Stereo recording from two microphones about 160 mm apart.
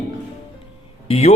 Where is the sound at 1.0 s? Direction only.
40° left (ahead or behind).